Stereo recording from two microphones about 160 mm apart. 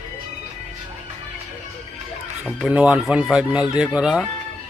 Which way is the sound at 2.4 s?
Centre (ahead or behind).